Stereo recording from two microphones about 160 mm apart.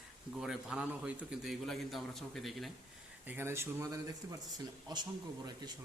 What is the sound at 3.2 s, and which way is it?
A man's voice, 15° right (ahead or behind).